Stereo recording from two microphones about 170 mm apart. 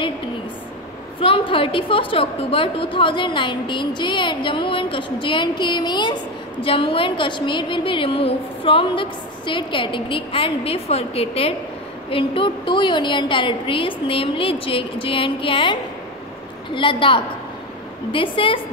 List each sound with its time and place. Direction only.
1.2 s a woman's voice: 30° left (ahead or behind)